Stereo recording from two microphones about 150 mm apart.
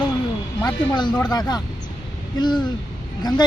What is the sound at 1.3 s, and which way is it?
Speech, 25° left (ahead or behind).